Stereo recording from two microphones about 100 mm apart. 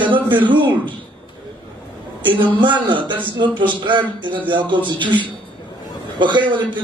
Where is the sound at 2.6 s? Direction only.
50° right (ahead or behind).